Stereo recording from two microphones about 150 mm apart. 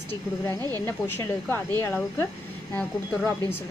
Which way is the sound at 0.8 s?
15° left (ahead or behind).